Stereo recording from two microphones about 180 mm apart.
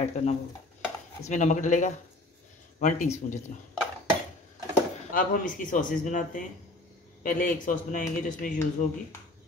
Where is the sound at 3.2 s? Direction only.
50° left (ahead or behind).